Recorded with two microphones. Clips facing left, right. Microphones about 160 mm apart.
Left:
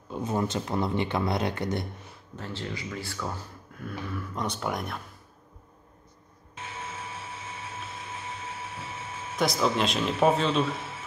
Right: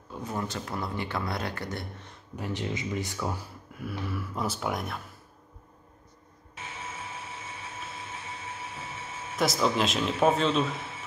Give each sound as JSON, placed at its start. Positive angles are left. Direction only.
{"t": 0.1, "sound": "speech", "side_deg": 20}
{"t": 2.3, "sound": "speech", "side_deg": -15}
{"t": 9.4, "sound": "speech", "side_deg": 0}